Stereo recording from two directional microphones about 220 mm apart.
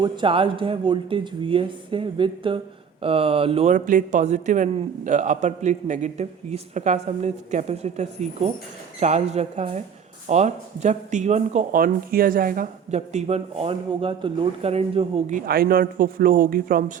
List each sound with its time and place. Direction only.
0.0 s speech: 20° right (ahead or behind); by 16.8 s 40° right (ahead or behind)